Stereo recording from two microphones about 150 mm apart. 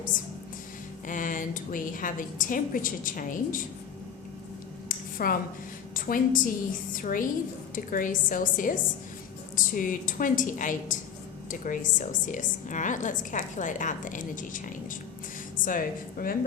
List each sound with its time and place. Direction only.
1.0 s a woman's voice: 60° left (ahead or behind)
5.1 s a woman's voice: 70° left (ahead or behind)